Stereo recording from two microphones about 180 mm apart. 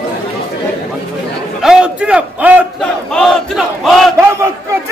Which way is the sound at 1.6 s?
5° right (ahead or behind).